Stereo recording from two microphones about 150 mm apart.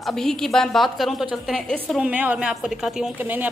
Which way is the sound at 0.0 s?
5° left (ahead or behind).